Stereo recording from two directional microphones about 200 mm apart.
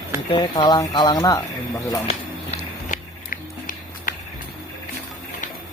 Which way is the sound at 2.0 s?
35° left (ahead or behind).